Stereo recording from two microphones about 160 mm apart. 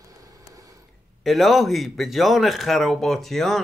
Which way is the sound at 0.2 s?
20° right (ahead or behind).